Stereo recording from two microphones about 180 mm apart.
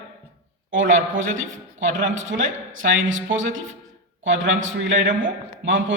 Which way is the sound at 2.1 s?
90° right.